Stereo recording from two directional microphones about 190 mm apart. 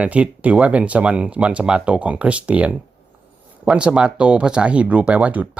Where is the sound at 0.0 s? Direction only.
5° right (ahead or behind).